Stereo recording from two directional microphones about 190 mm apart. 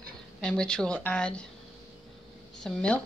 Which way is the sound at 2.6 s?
5° left (ahead or behind).